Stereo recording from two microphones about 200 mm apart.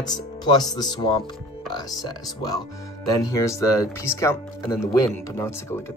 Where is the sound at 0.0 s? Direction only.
20° left (ahead or behind).